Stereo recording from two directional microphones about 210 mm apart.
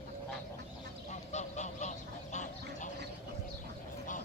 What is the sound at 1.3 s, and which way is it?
Honk, 35° left (ahead or behind).